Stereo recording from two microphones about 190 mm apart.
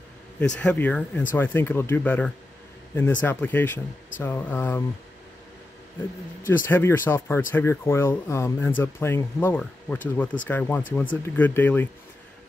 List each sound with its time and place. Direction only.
0.4 s speech: 5° left (ahead or behind)
6.4 s speech: 10° left (ahead or behind)